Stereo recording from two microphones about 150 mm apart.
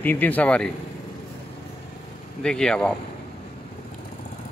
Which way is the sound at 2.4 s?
5° left (ahead or behind).